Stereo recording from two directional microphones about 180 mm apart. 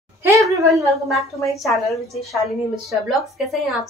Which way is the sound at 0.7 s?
Centre (ahead or behind).